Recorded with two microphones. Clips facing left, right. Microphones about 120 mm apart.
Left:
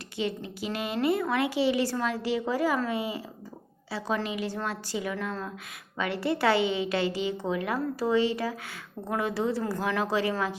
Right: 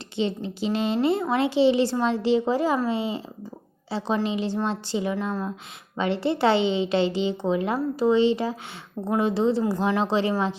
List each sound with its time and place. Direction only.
0.2 s speech: 25° right (ahead or behind)